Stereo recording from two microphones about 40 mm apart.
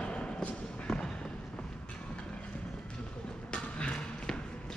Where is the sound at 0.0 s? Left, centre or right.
Left.